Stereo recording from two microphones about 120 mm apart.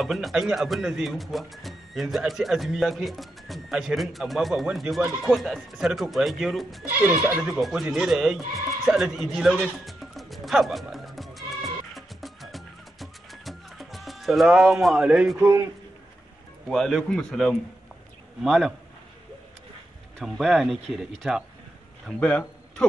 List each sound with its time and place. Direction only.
0.0 s speech: centre (ahead or behind)
6.9 s speech: 15° right (ahead or behind)
7.4 s speech: 5° right (ahead or behind)
8.8 s music: 5° right (ahead or behind)
16.6 s speech: 5° left (ahead or behind)
20.2 s speech: centre (ahead or behind)
22.0 s a man's voice: 10° left (ahead or behind)